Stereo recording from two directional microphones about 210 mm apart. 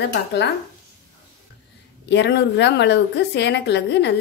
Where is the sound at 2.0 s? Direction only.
55° left (ahead or behind).